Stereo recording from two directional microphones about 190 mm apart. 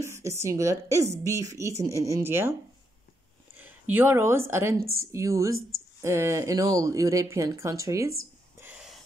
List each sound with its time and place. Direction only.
0.0 s a woman's voice: 15° right (ahead or behind)
3.5 s a woman's voice: 10° right (ahead or behind)